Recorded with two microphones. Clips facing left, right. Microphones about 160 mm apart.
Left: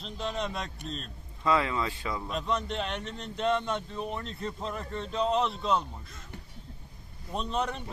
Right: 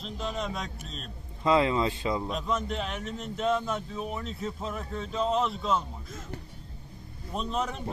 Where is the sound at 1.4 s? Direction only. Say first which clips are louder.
Right 4 dB; 25° right (ahead or behind).